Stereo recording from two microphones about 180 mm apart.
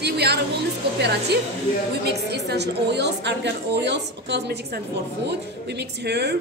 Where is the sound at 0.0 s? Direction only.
65° right (ahead or behind).